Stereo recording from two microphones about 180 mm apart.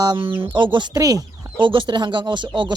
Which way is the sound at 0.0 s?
20° right (ahead or behind).